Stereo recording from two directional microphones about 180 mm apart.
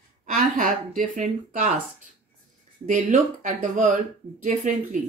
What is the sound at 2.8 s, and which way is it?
Speech, 45° right (ahead or behind).